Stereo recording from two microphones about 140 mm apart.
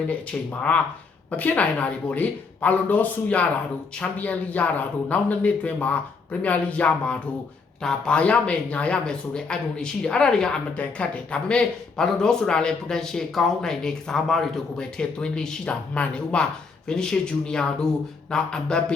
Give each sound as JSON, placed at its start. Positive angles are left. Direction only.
{"t": 0.1, "sound": "speech", "side_deg": 10}